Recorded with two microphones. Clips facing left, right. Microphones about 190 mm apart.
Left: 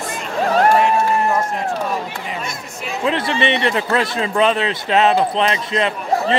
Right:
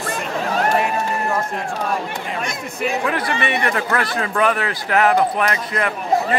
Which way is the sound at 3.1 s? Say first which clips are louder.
Left 3 dB; 25° left (ahead or behind).